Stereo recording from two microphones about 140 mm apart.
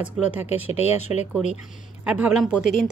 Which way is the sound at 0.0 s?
10° right (ahead or behind).